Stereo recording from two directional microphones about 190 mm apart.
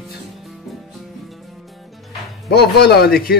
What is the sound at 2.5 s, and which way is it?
Speech, 60° left (ahead or behind).